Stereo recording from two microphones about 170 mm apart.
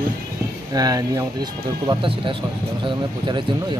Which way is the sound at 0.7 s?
20° right (ahead or behind).